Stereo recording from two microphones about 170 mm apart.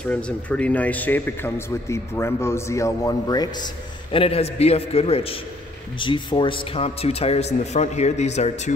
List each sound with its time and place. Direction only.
0.0 s speech: 5° left (ahead or behind); by 8.7 s 40° left (ahead or behind)